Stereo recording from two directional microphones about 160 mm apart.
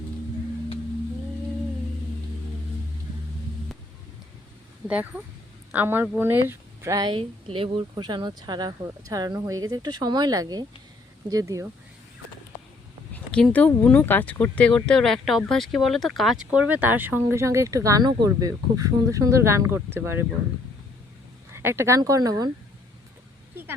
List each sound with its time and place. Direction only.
4.9 s a woman's voice: 10° right (ahead or behind)
13.1 s speech: 5° left (ahead or behind); by 20.2 s 15° right (ahead or behind)
21.5 s a woman's voice: 15° right (ahead or behind)